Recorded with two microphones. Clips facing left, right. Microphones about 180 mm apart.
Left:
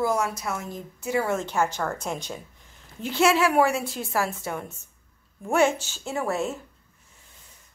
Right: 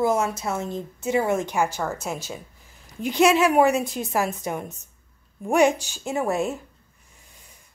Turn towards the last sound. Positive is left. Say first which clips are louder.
# right 3 dB
turn(degrees=-15)  # may be behind; listen again after turning